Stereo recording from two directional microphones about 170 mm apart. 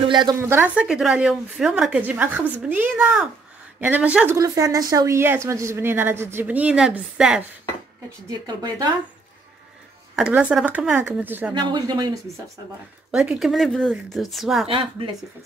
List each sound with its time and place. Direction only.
0.1 s a woman's voice: 25° right (ahead or behind)
0.4 s speech: 15° right (ahead or behind)
0.8 s speech: 5° right (ahead or behind)
4.4 s speech: 20° right (ahead or behind)
8.3 s speech: 25° right (ahead or behind)
10.3 s speech: 10° right (ahead or behind)
11.5 s speech: 25° right (ahead or behind)
13.1 s speech: 5° right (ahead or behind)
14.7 s speech: 30° right (ahead or behind)